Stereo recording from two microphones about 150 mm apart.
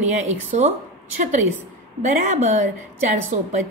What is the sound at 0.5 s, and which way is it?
Speech, 50° right (ahead or behind).